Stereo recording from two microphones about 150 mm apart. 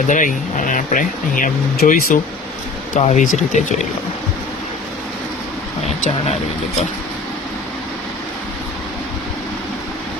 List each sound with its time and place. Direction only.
0.1 s speech: 60° left (ahead or behind)
2.9 s speech: 55° left (ahead or behind)